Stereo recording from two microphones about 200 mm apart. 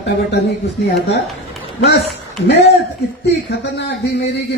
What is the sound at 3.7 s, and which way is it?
Speech, 60° left (ahead or behind).